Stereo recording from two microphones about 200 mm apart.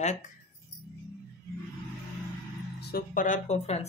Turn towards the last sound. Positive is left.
turn(degrees=35)  # may be behind; listen again after turning